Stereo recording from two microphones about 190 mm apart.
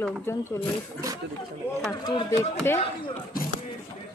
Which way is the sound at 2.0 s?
20° left (ahead or behind).